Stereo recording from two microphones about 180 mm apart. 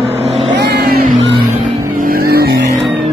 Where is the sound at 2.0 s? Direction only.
55° right (ahead or behind).